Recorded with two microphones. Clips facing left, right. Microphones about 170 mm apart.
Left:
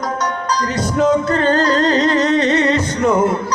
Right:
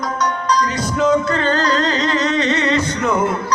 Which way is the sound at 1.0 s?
50° left (ahead or behind).